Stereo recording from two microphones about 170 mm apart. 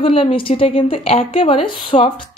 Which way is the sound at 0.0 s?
35° left (ahead or behind).